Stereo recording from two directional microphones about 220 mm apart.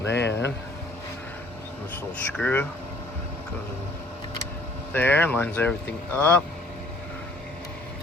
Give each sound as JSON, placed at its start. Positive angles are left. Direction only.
{"t": 0.0, "sound": "speech", "side_deg": 55}
{"t": 2.3, "sound": "speech", "side_deg": 5}
{"t": 4.9, "sound": "speech", "side_deg": 10}